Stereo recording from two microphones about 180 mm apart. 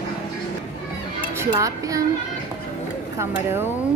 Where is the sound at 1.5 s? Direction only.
20° right (ahead or behind).